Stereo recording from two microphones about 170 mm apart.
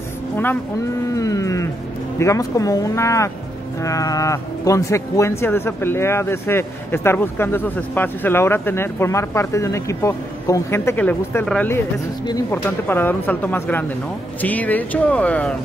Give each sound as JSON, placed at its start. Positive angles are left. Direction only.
{"t": 1.1, "sound": "speech", "side_deg": 20}